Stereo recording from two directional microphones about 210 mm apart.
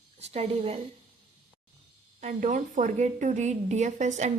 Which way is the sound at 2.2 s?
35° right (ahead or behind).